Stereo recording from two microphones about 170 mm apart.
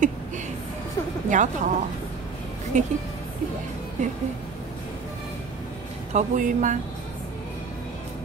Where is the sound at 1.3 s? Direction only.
50° right (ahead or behind).